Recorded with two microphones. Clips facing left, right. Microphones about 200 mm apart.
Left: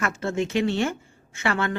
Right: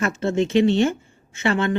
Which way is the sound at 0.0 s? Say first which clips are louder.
Right 5 dB; 25° right (ahead or behind).